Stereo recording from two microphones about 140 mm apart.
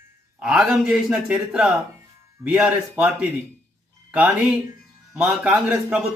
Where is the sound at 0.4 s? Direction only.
5° right (ahead or behind).